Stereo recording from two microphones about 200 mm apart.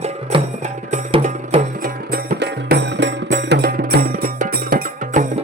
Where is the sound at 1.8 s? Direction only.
50° right (ahead or behind).